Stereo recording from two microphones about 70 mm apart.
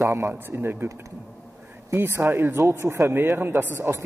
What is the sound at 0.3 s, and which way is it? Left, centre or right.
Speech, right.